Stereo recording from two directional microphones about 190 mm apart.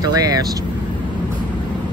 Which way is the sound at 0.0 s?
20° right (ahead or behind).